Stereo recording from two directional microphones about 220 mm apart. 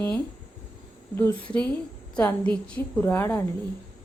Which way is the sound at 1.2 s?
10° left (ahead or behind).